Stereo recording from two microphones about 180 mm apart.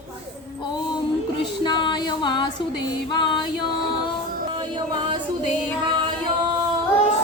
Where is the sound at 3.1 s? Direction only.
25° left (ahead or behind).